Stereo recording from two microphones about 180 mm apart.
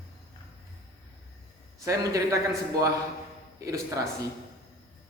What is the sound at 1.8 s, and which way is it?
Speech, 20° right (ahead or behind).